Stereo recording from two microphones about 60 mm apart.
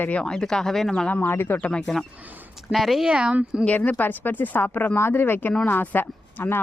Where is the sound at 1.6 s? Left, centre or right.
Centre.